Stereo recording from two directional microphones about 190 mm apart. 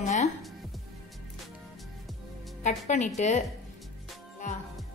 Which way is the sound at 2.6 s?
40° left (ahead or behind).